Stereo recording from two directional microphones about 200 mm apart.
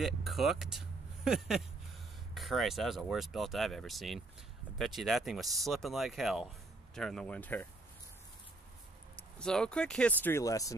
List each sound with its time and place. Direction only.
0.0 s speech: centre (ahead or behind)
9.4 s speech: 5° left (ahead or behind)